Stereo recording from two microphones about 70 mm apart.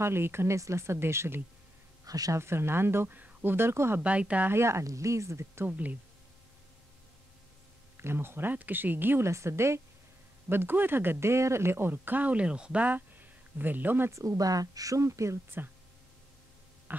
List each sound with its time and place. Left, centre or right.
0.0 s speech: right
2.0 s speech: right
2.3 s speech: right
4.0 s speech: centre
4.5 s speech: right
5.7 s speech: right
8.0 s speech: right
9.3 s speech: right
10.5 s speech: right
14.1 s speech: right